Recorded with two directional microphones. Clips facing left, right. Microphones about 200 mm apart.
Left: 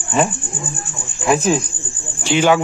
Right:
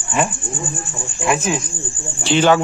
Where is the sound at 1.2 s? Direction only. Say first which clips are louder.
Left 4 dB; 35° left (ahead or behind).